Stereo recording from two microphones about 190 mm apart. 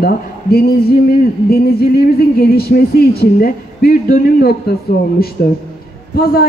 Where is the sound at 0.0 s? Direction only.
55° left (ahead or behind).